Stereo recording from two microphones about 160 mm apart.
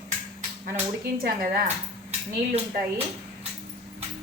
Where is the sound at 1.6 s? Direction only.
40° right (ahead or behind).